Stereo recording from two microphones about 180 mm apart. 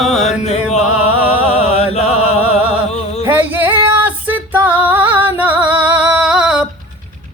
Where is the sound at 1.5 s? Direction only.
35° left (ahead or behind).